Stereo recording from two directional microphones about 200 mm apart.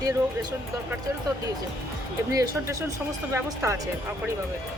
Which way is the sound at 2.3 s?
15° right (ahead or behind).